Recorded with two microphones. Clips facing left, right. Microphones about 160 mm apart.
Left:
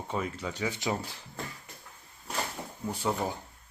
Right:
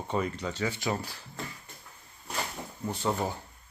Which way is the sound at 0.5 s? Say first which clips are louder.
Left 2 dB; 15° left (ahead or behind).